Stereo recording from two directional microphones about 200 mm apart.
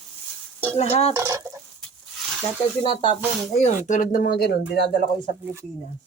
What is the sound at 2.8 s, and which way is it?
Speech, 25° left (ahead or behind).